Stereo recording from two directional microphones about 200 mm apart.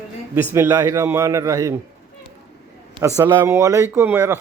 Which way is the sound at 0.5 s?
10° right (ahead or behind).